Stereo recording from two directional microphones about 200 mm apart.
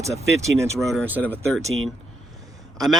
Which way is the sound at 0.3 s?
15° right (ahead or behind).